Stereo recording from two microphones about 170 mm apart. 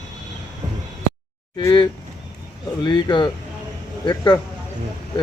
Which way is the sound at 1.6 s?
20° left (ahead or behind).